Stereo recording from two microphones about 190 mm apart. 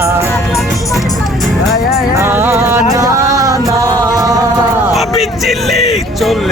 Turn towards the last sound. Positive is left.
turn(degrees=0)  # may be behind; listen again after turning